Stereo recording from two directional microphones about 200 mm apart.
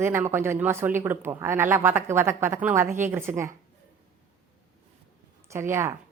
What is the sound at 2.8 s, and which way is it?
Speech, 40° right (ahead or behind).